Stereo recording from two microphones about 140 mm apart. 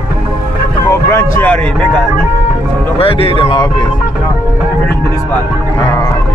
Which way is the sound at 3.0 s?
40° left (ahead or behind).